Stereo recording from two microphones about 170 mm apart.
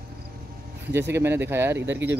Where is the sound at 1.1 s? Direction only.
15° right (ahead or behind).